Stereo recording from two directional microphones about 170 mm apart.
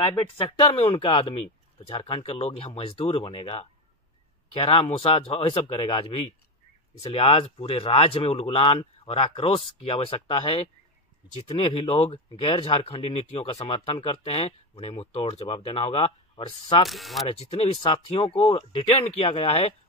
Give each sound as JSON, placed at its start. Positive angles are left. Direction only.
{"t": 0.5, "sound": "speech", "side_deg": 35}
{"t": 16.8, "sound": "speech", "side_deg": 0}
{"t": 17.3, "sound": "speech", "side_deg": 35}